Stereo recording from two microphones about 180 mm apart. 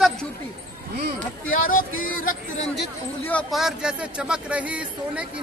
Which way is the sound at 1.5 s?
50° left (ahead or behind).